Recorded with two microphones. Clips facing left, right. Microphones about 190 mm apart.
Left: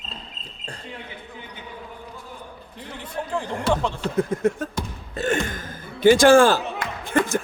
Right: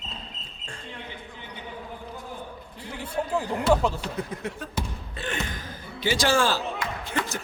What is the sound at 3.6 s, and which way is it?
Speech, 5° right (ahead or behind).